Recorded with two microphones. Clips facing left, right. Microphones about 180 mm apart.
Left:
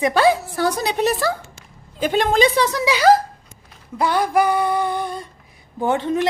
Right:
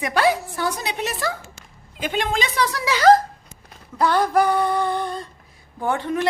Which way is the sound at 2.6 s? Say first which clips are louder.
Even; 20° left (ahead or behind).